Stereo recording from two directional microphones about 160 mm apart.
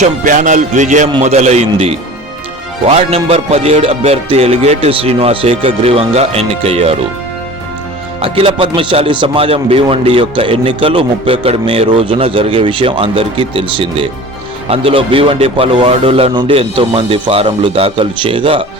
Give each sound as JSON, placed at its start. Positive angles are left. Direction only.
{"t": 0.0, "sound": "music", "side_deg": -50}
{"t": 2.8, "sound": "speech", "side_deg": -40}
{"t": 8.2, "sound": "speech", "side_deg": -35}